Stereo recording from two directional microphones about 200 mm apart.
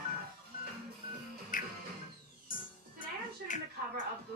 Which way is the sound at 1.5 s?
40° left (ahead or behind).